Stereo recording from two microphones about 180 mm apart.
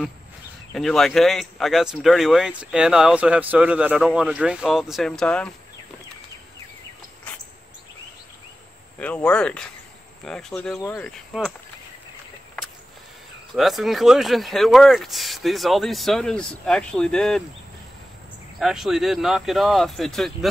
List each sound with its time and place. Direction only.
0.7 s speech: centre (ahead or behind)
9.0 s speech: 5° left (ahead or behind)
10.8 s cricket: 15° left (ahead or behind)
11.1 s cricket: 5° left (ahead or behind)
13.6 s speech: centre (ahead or behind)
18.6 s speech: centre (ahead or behind)